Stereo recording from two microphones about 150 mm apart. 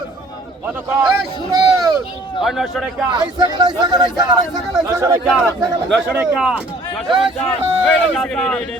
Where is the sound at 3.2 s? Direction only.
30° right (ahead or behind).